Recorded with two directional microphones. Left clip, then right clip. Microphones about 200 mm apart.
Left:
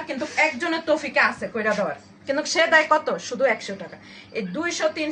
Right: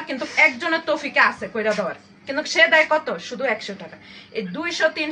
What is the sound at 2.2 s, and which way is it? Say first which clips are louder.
A woman's voice: right 3 dB; 15° left (ahead or behind).